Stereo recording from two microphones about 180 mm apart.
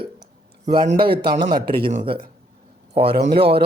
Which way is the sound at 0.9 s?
30° right (ahead or behind).